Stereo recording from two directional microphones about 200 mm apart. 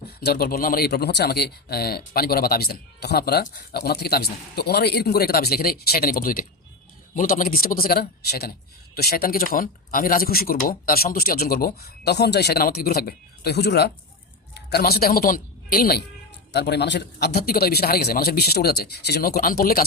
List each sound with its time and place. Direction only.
0.2 s speech: 50° left (ahead or behind)